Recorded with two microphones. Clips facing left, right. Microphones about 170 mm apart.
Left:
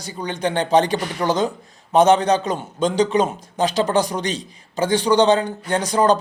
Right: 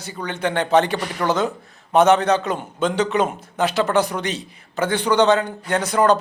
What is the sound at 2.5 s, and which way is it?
A man's voice, 40° left (ahead or behind).